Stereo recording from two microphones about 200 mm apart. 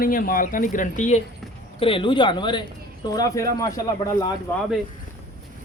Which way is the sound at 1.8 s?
25° left (ahead or behind).